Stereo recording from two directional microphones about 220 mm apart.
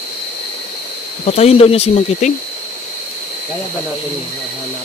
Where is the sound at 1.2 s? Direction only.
30° left (ahead or behind).